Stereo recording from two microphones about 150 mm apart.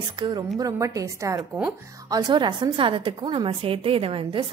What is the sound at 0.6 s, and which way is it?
A woman's voice, 20° right (ahead or behind).